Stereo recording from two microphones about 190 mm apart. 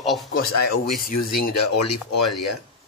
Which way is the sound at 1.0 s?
50° left (ahead or behind).